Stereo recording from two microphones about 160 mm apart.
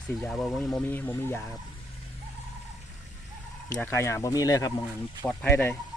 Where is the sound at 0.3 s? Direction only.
5° left (ahead or behind).